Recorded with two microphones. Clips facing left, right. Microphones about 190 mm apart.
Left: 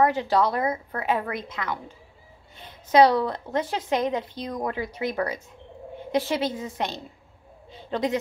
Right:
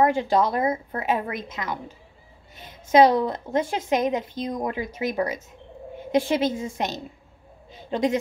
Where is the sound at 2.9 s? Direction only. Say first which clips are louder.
Right 1 dB; 20° right (ahead or behind).